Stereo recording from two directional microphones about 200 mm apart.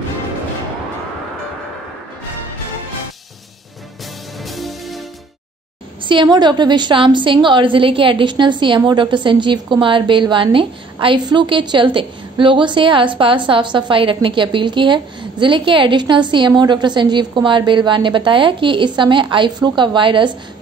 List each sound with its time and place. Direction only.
4.5 s music: centre (ahead or behind)
6.0 s a woman's voice: 20° right (ahead or behind)